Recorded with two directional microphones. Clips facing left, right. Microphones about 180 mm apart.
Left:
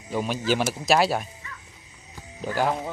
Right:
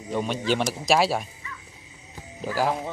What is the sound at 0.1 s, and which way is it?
Speech, centre (ahead or behind).